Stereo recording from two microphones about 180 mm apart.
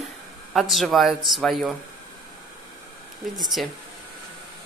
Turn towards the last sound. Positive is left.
turn(degrees=0)  # may be behind; listen again after turning